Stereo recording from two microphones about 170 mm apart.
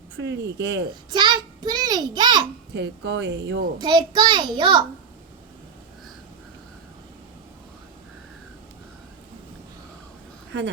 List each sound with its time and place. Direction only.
0.2 s speech: 90° right
0.9 s a child's voice: 25° right (ahead or behind)
2.7 s speech: 85° right
3.8 s a child's voice: 25° right (ahead or behind)